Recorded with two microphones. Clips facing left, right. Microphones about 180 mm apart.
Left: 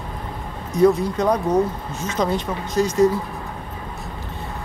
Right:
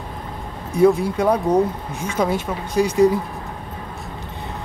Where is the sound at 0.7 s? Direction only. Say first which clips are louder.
Right 1 dB; 10° right (ahead or behind).